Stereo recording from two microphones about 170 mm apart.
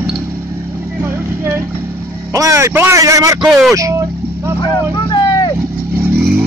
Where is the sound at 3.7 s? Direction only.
20° right (ahead or behind).